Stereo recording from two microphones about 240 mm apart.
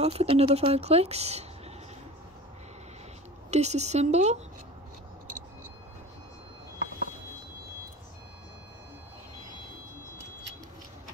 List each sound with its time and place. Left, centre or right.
0.0 s speech: right
3.4 s speech: right